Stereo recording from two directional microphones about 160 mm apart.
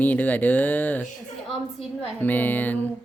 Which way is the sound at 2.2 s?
10° left (ahead or behind).